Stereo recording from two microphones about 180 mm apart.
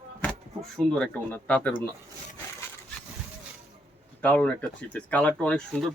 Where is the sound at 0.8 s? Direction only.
5° left (ahead or behind).